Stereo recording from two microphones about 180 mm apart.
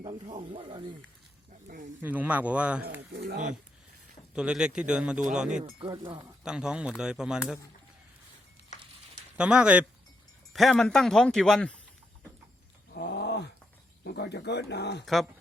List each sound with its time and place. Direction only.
0.3 s speech: 40° right (ahead or behind)
0.6 s speech: 25° right (ahead or behind)
1.6 s speech: 45° right (ahead or behind)
2.0 s a man's voice: 10° right (ahead or behind)
3.2 s speech: 50° right (ahead or behind)
4.1 s a man's voice: 5° right (ahead or behind)
5.8 s speech: 25° right (ahead or behind)
6.4 s speech: 5° right (ahead or behind)
9.4 s a man's voice: 5° right (ahead or behind)
12.9 s a sound: 65° left (ahead or behind)
14.0 s speech: 65° left (ahead or behind)
15.0 s speech: centre (ahead or behind)